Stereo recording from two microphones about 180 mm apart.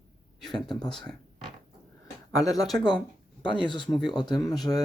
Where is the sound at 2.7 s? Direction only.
25° left (ahead or behind).